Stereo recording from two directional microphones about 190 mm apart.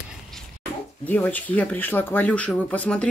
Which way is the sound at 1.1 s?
10° left (ahead or behind).